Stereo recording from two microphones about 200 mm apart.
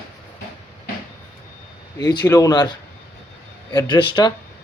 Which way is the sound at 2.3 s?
15° left (ahead or behind).